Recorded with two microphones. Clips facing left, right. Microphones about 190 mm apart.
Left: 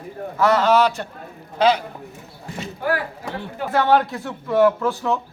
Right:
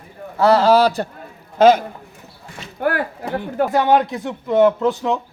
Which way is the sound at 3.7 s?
15° right (ahead or behind).